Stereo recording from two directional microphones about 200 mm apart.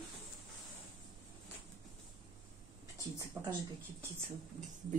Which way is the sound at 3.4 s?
20° right (ahead or behind).